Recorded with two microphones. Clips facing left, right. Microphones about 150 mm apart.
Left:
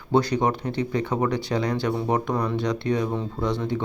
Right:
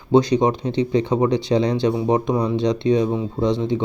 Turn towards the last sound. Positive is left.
turn(degrees=-20)  # may be behind; listen again after turning